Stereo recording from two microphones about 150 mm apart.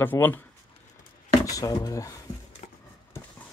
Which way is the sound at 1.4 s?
25° left (ahead or behind).